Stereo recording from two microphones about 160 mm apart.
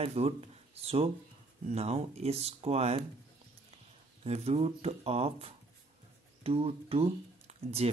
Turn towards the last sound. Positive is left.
turn(degrees=-40)  # may be behind; listen again after turning